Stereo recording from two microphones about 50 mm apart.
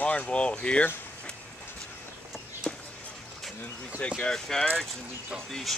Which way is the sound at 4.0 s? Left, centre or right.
Left.